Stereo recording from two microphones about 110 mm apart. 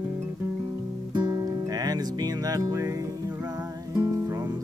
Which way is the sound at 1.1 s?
40° right (ahead or behind).